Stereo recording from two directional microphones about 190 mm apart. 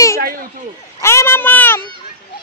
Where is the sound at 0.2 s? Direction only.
50° right (ahead or behind).